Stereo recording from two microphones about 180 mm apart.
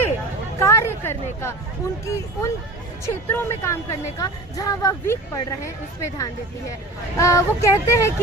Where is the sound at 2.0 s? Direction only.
15° left (ahead or behind).